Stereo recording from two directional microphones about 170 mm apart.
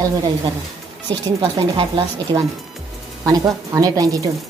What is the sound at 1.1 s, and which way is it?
Speech, 20° right (ahead or behind).